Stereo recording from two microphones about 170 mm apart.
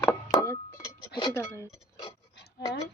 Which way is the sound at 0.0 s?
20° left (ahead or behind).